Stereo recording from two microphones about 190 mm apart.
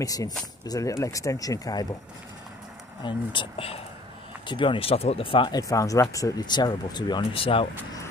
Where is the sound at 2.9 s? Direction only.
25° left (ahead or behind).